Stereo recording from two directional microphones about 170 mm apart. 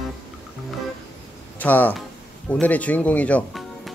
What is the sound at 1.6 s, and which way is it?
Speech, 10° left (ahead or behind).